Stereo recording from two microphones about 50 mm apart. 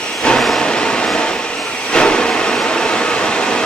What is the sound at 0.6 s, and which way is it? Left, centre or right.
Vehicle, centre.